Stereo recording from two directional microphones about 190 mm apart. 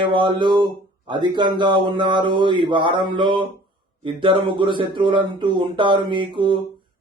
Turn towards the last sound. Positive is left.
turn(degrees=-25)  # may be behind; listen again after turning